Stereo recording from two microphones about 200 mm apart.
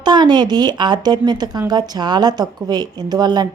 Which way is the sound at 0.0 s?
20° right (ahead or behind).